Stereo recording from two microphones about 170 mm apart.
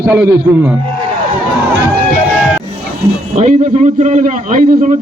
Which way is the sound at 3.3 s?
40° right (ahead or behind).